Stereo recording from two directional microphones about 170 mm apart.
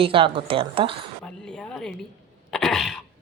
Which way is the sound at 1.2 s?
5° left (ahead or behind).